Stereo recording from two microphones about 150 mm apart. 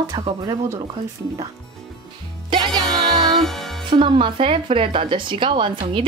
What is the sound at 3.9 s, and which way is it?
Speech, 35° right (ahead or behind).